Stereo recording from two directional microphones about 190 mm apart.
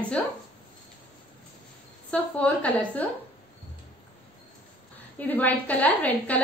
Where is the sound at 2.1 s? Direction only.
5° left (ahead or behind).